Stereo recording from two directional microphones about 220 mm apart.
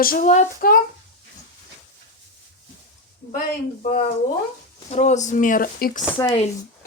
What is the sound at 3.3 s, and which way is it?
A woman's voice, 40° left (ahead or behind).